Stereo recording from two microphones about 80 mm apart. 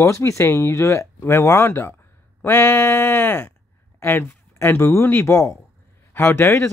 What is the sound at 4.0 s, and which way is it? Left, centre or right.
Speech, left.